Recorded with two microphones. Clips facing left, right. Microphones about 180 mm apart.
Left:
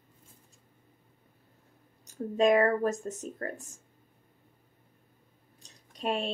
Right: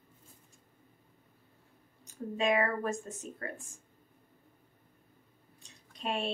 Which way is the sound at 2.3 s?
40° left (ahead or behind).